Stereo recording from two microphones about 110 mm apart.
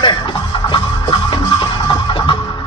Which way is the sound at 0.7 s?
45° left (ahead or behind).